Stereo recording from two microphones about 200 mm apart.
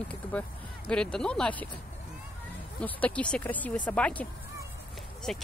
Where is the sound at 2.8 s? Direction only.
5° left (ahead or behind).